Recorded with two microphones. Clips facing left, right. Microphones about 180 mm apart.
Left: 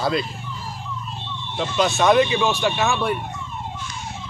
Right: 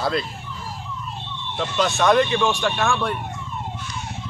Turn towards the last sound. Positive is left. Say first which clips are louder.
# left 1 dB
turn(degrees=5)  # may be behind; listen again after turning